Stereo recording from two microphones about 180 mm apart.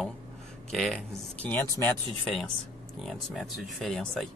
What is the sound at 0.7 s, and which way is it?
Speech, centre (ahead or behind).